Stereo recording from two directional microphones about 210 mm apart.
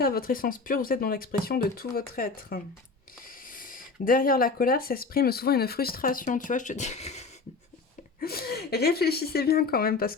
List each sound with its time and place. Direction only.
0.0 s speech: 45° left (ahead or behind)
8.2 s speech: 45° left (ahead or behind)